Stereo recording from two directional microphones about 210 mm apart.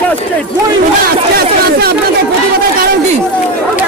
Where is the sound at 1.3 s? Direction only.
45° right (ahead or behind).